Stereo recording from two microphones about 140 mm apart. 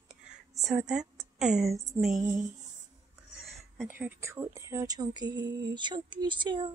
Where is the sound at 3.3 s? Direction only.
Centre (ahead or behind).